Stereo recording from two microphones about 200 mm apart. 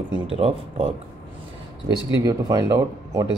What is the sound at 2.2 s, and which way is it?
Speech, 20° right (ahead or behind).